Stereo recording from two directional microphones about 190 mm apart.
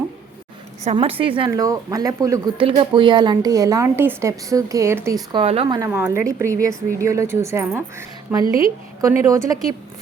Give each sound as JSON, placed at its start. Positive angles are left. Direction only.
{"t": 0.9, "sound": "a woman's voice", "side_deg": -35}
{"t": 2.6, "sound": "a woman's voice", "side_deg": -30}
{"t": 5.9, "sound": "a woman's voice", "side_deg": -10}